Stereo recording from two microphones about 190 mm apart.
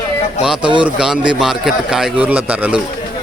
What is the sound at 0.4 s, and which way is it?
Speech, 5° right (ahead or behind).